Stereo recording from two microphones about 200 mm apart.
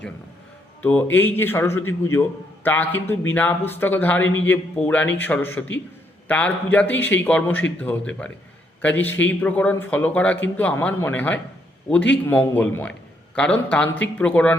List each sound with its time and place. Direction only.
0.8 s a man's voice: 10° left (ahead or behind)